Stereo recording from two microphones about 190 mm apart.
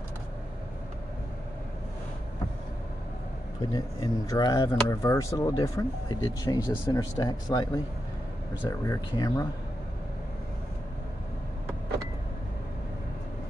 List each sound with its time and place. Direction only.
3.7 s speech: 20° left (ahead or behind)